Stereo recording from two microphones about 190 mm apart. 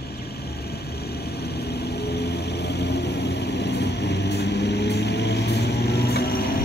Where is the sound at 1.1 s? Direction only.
60° left (ahead or behind).